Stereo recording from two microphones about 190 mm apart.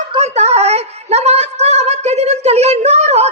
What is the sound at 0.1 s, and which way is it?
A woman's voice, 35° right (ahead or behind).